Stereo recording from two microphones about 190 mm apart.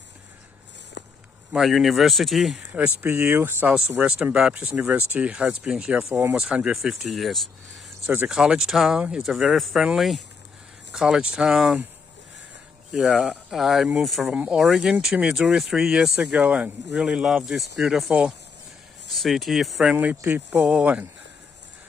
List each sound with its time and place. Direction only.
1.0 s a sound: 65° left (ahead or behind)
1.5 s speech: centre (ahead or behind)
12.9 s speech: 5° right (ahead or behind)